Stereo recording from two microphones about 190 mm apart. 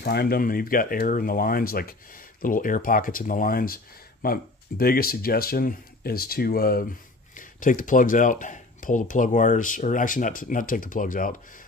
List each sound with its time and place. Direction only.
0.0 s speech: 55° left (ahead or behind)